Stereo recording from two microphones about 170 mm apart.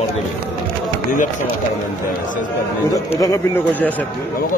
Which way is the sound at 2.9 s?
20° left (ahead or behind).